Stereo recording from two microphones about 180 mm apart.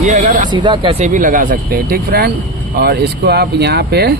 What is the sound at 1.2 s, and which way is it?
Speech, 45° right (ahead or behind).